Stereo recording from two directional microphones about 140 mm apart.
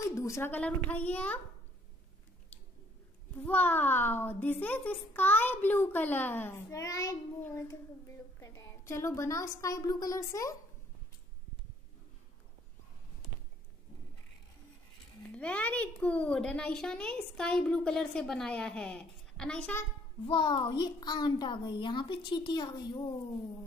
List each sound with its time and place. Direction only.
0.1 s a child's voice: 20° left (ahead or behind)
3.4 s a child's voice: 10° left (ahead or behind)
15.3 s a child's voice: 10° left (ahead or behind)
20.2 s a child's voice: 40° left (ahead or behind)